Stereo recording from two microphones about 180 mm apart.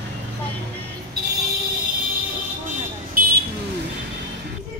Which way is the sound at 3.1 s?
55° right (ahead or behind).